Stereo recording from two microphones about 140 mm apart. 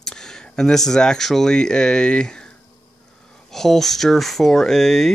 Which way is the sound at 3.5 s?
Centre (ahead or behind).